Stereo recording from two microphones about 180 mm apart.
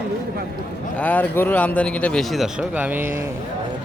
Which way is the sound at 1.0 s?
10° left (ahead or behind).